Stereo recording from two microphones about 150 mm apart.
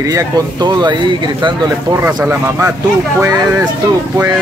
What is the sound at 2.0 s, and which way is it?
Speech, 15° right (ahead or behind).